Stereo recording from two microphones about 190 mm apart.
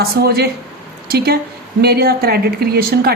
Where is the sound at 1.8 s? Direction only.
55° right (ahead or behind).